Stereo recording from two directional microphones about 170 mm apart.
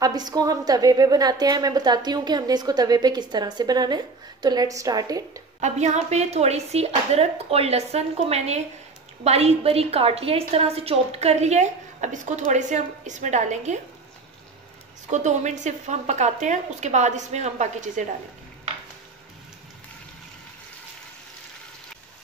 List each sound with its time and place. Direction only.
0.0 s a woman's voice: 25° right (ahead or behind)
5.6 s a woman's voice: 45° right (ahead or behind)
15.0 s a woman's voice: 45° right (ahead or behind)